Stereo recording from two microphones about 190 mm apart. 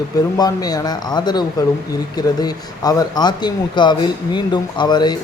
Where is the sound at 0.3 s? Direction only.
20° left (ahead or behind).